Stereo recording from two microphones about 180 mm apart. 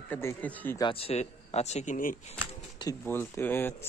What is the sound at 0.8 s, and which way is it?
Speech, 30° left (ahead or behind).